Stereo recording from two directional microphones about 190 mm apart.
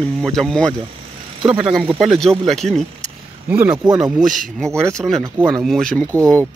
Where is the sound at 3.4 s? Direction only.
10° right (ahead or behind).